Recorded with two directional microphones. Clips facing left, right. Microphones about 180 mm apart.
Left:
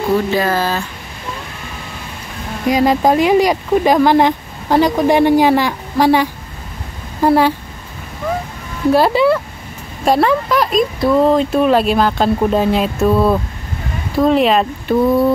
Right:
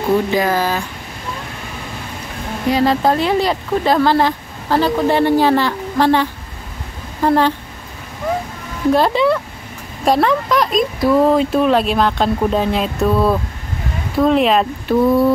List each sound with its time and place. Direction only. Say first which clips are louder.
0.3 s speech: even; 15° right (ahead or behind)
2.7 s speech: left 2 dB; 15° left (ahead or behind)
8.9 s speech: left 2 dB; 5° left (ahead or behind)